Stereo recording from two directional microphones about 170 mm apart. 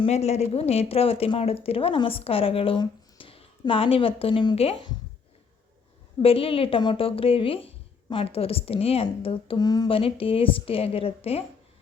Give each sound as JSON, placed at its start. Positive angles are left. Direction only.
{"t": 0.0, "sound": "speech", "side_deg": 40}
{"t": 6.2, "sound": "speech", "side_deg": 35}